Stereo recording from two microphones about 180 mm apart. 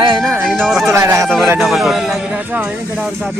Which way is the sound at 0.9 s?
15° right (ahead or behind).